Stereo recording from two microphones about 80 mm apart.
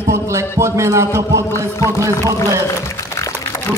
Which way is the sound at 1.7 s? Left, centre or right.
Left.